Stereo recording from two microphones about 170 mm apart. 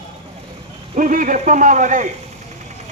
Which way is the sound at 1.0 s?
50° right (ahead or behind).